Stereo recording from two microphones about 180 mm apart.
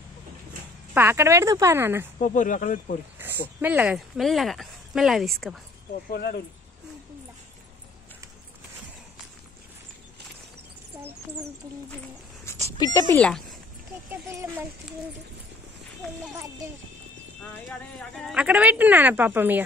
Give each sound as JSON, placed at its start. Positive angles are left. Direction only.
{"t": 0.9, "sound": "a woman's voice", "side_deg": -15}
{"t": 2.1, "sound": "speech", "side_deg": 45}
{"t": 3.2, "sound": "speech", "side_deg": -10}
{"t": 4.2, "sound": "speech", "side_deg": 0}
{"t": 6.0, "sound": "speech", "side_deg": 60}
{"t": 12.5, "sound": "speech", "side_deg": 15}
{"t": 13.1, "sound": "speech", "side_deg": 5}
{"t": 14.1, "sound": "a woman's voice", "side_deg": -15}
{"t": 17.6, "sound": "a woman's voice", "side_deg": 0}